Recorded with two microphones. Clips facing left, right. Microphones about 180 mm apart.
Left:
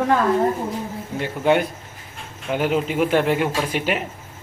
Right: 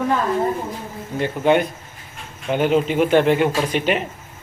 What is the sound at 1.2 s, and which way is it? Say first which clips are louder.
A man's voice: right 2 dB; 10° left (ahead or behind).